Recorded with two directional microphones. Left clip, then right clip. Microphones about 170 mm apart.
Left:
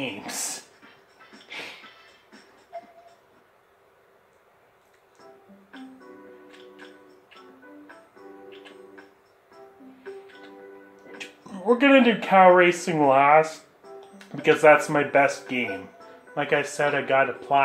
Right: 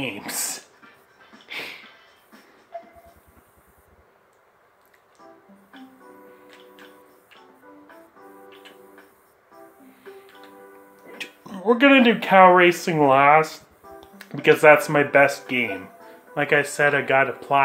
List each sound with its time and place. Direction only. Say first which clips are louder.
0.0 s speech: right 2 dB; 45° right (ahead or behind)
1.5 s music: right 4 dB; 45° right (ahead or behind)
11.1 s speech: right 3 dB; 50° right (ahead or behind)